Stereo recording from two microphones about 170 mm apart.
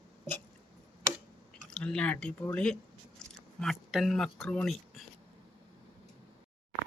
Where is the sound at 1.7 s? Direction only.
5° left (ahead or behind).